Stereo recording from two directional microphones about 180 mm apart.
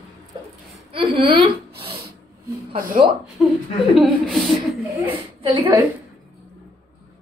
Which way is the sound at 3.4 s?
5° right (ahead or behind).